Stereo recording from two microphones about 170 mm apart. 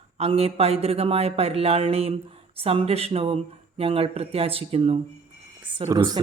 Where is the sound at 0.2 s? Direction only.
35° right (ahead or behind).